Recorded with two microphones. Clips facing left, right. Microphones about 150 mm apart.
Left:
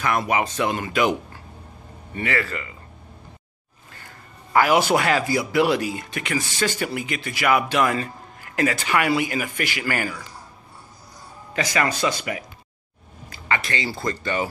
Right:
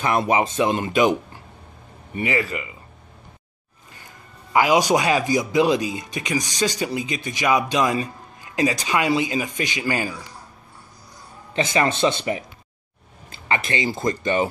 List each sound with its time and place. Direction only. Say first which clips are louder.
0.0 s a man's voice: right 2 dB; 25° right (ahead or behind)
3.9 s a man's voice: even; 15° right (ahead or behind)
11.5 s speech: right 3 dB; 25° right (ahead or behind)